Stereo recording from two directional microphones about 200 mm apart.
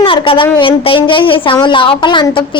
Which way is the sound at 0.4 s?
25° left (ahead or behind).